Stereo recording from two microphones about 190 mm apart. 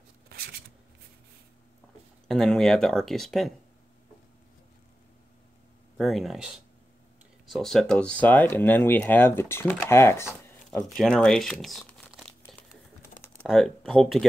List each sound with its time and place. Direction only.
0.3 s a sound: 55° right (ahead or behind)
2.2 s speech: centre (ahead or behind)
5.9 s speech: centre (ahead or behind)
12.3 s crumpling: 5° left (ahead or behind)
13.4 s speech: centre (ahead or behind)